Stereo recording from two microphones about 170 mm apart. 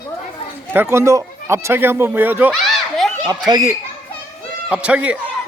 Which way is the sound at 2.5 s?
Centre (ahead or behind).